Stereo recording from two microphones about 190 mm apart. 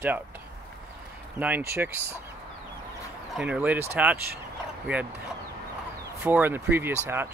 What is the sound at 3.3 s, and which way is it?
Speech, 5° right (ahead or behind).